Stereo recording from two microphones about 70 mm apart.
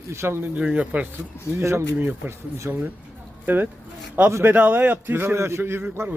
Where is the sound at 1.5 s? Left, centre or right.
Right.